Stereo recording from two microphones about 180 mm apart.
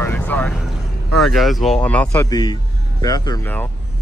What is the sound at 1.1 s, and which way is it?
A man's voice, centre (ahead or behind).